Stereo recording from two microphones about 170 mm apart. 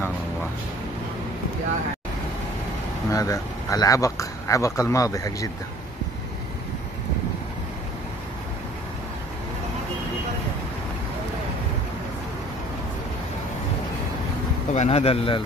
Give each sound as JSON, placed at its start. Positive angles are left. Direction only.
{"t": 3.1, "sound": "speech", "side_deg": 20}
{"t": 14.7, "sound": "speech", "side_deg": 40}